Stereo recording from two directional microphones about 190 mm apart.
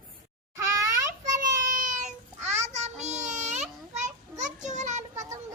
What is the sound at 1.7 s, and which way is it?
Child singing, 40° right (ahead or behind).